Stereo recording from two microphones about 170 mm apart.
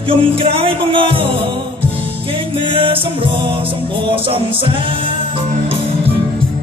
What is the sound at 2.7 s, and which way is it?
Music, 30° right (ahead or behind).